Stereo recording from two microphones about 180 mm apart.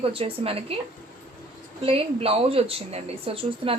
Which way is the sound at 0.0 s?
30° right (ahead or behind).